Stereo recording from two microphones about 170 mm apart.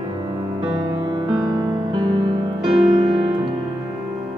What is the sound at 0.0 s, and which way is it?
Music, 25° right (ahead or behind).